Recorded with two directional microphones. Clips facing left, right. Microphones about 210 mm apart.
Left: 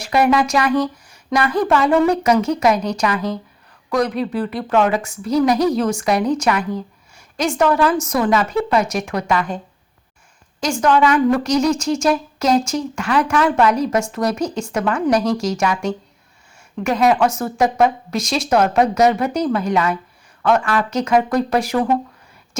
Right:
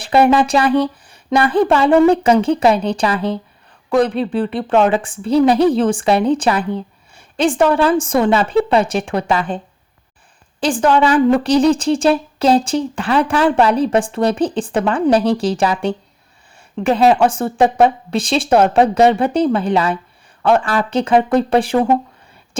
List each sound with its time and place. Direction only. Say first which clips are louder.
0.0 s a woman's voice: right 3 dB; 30° right (ahead or behind)
10.6 s a woman's voice: right 2 dB; 30° right (ahead or behind)